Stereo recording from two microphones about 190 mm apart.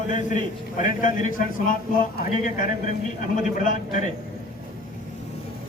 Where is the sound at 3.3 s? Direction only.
40° left (ahead or behind).